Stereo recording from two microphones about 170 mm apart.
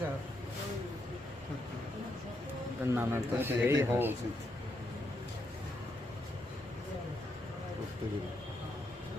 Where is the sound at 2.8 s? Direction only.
15° right (ahead or behind).